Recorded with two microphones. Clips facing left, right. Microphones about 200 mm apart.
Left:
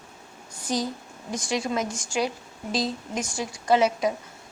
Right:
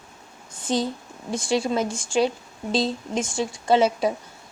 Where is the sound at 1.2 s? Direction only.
30° right (ahead or behind).